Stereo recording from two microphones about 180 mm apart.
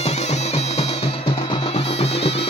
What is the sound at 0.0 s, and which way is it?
Music, 35° left (ahead or behind).